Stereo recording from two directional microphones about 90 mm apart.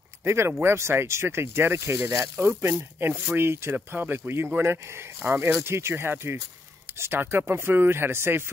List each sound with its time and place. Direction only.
0.2 s speech: 30° right (ahead or behind)